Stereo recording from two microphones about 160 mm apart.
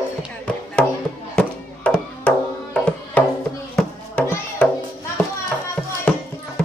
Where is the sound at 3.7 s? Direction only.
10° left (ahead or behind).